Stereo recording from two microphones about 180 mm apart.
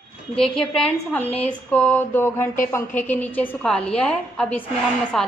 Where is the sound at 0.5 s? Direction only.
5° left (ahead or behind).